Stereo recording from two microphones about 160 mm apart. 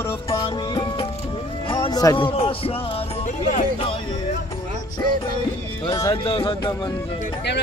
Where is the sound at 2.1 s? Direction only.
35° left (ahead or behind).